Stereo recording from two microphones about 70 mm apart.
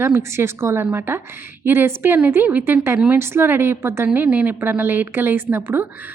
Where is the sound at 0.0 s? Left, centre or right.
Right.